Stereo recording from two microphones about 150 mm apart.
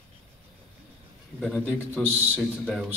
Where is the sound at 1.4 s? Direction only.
5° left (ahead or behind).